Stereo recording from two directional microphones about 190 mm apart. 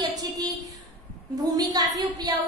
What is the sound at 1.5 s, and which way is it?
Speech, 20° right (ahead or behind).